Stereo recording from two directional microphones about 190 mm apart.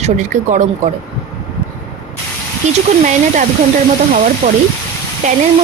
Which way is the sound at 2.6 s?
40° right (ahead or behind).